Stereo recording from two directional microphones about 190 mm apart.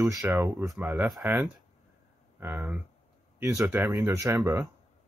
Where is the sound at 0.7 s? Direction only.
5° right (ahead or behind).